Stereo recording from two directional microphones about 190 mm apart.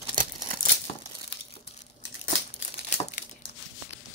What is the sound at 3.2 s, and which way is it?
Crumpling, 45° left (ahead or behind).